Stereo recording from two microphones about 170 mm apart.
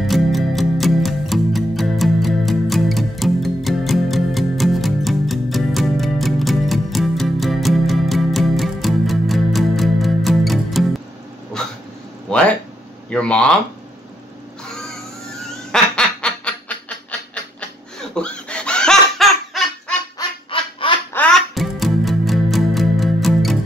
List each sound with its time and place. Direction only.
0.0 s music: centre (ahead or behind)
12.3 s a sound: 5° left (ahead or behind)
13.1 s speech: 5° left (ahead or behind)
15.7 s quack: 5° left (ahead or behind)
17.3 s chicken: 5° left (ahead or behind)
20.2 s honk: 30° left (ahead or behind)
21.1 s music: 5° left (ahead or behind)